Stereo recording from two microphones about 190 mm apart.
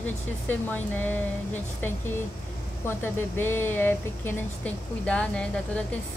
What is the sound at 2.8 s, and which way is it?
Speech, 10° left (ahead or behind).